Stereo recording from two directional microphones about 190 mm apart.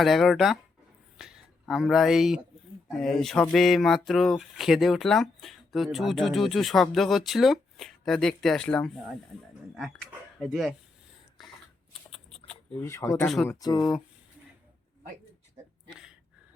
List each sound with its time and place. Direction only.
0.0 s speech: centre (ahead or behind)
10.4 s speech: centre (ahead or behind)
11.4 s a sound: centre (ahead or behind)
12.5 s speech: 10° left (ahead or behind)
13.2 s speech: centre (ahead or behind)
13.5 s speech: 20° left (ahead or behind)
15.9 s a sound: 5° right (ahead or behind)